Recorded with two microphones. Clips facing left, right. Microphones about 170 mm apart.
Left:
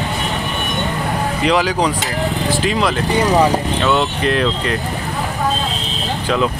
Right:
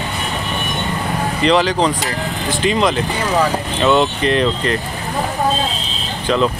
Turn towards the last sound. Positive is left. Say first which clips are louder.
# right 1 dB
turn(degrees=5)  # may be behind; listen again after turning